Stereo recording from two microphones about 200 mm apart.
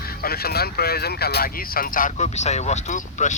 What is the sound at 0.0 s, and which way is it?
Speech, 50° left (ahead or behind).